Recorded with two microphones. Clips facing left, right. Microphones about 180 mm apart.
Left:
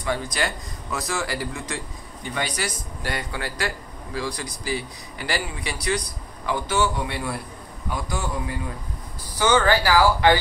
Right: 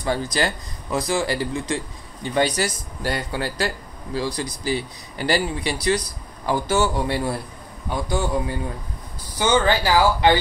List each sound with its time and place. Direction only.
0.0 s a man's voice: 35° right (ahead or behind)